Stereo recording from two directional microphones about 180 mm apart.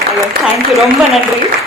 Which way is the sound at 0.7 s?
Centre (ahead or behind).